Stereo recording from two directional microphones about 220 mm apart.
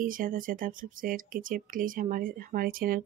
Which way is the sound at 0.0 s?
40° right (ahead or behind).